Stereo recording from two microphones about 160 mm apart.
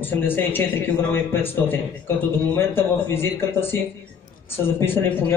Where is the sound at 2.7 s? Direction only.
15° left (ahead or behind).